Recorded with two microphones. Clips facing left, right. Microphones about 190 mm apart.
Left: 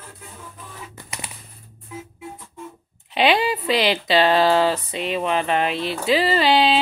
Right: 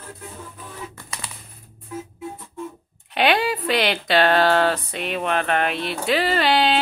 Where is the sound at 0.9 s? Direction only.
20° left (ahead or behind).